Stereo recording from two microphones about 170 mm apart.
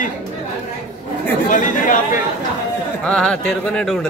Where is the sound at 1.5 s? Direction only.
50° left (ahead or behind).